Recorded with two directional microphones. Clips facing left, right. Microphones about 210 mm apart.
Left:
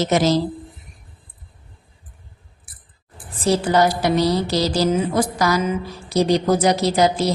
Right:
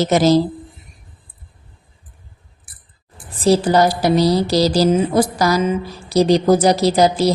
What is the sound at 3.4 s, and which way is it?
A woman's voice, 35° right (ahead or behind).